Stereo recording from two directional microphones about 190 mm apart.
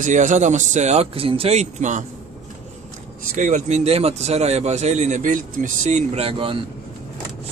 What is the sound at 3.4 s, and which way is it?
Speech, 40° right (ahead or behind).